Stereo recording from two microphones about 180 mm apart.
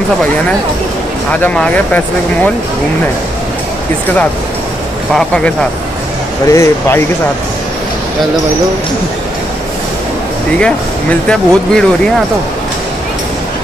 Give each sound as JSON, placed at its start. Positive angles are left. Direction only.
{"t": 1.3, "sound": "speech", "side_deg": 10}
{"t": 5.1, "sound": "speech", "side_deg": 5}
{"t": 6.4, "sound": "speech", "side_deg": 15}
{"t": 10.6, "sound": "speech", "side_deg": 5}